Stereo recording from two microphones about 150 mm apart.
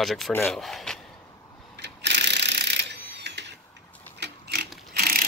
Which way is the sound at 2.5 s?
90° right.